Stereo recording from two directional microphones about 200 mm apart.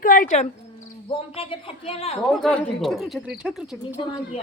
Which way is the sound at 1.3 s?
30° left (ahead or behind).